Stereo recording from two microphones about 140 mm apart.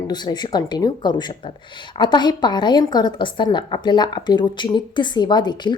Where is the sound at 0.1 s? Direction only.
30° left (ahead or behind).